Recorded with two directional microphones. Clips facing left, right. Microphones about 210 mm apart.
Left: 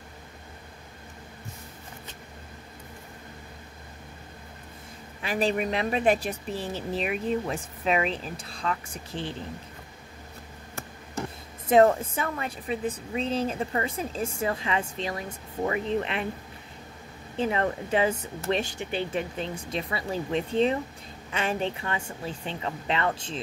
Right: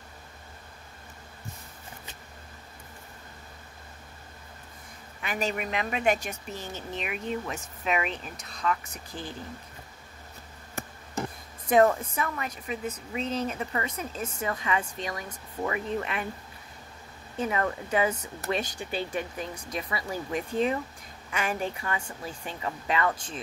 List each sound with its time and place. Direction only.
5.2 s speech: 30° left (ahead or behind)
11.7 s a woman's voice: 25° left (ahead or behind)
17.4 s a woman's voice: 30° left (ahead or behind)